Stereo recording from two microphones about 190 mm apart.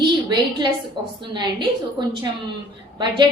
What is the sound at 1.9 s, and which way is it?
Speech, 25° right (ahead or behind).